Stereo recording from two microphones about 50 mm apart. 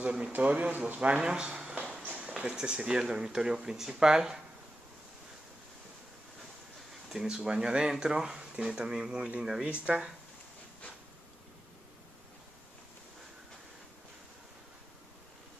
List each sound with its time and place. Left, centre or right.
0.3 s speech: right
1.1 s speech: centre
2.0 s a sound: right
3.0 s speech: centre
7.1 s speech: centre